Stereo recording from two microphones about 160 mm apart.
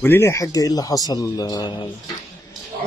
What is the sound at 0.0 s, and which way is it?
A man's voice, 15° left (ahead or behind).